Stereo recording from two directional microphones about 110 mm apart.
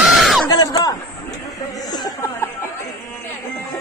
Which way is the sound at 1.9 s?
35° left (ahead or behind).